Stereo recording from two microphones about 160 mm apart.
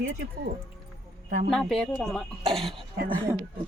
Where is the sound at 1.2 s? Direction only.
60° right (ahead or behind).